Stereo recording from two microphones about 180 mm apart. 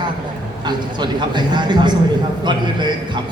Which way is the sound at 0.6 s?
25° right (ahead or behind).